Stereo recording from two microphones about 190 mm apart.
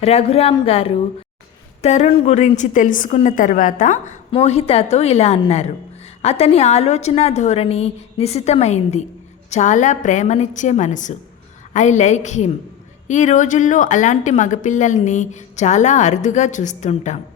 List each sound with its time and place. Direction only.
0.0 s a woman's voice: 35° left (ahead or behind)
4.3 s a woman's voice: 30° left (ahead or behind)